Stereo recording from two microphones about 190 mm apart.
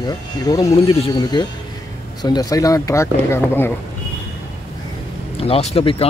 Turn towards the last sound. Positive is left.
turn(degrees=30)  # may be behind; listen again after turning